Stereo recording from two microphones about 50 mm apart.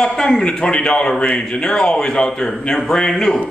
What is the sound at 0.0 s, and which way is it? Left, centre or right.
A man's voice, centre.